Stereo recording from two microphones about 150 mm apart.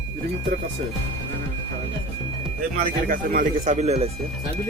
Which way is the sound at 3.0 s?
70° right (ahead or behind).